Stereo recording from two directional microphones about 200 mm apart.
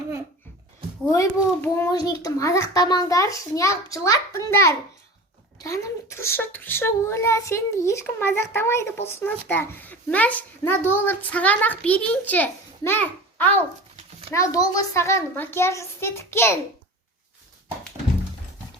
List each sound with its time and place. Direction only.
1.1 s a child's voice: 15° left (ahead or behind)